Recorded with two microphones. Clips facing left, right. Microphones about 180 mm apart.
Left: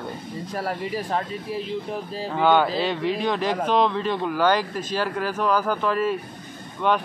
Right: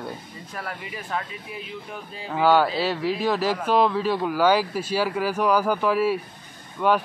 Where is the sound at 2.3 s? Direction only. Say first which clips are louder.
Even; 5° right (ahead or behind).